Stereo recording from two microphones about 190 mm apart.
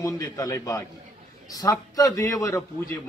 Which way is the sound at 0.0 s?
15° left (ahead or behind).